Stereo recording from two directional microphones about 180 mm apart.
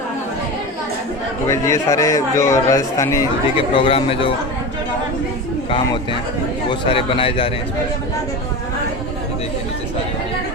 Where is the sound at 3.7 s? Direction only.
30° left (ahead or behind).